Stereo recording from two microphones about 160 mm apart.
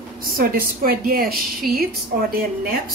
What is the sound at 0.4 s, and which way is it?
A woman's voice, 65° right (ahead or behind).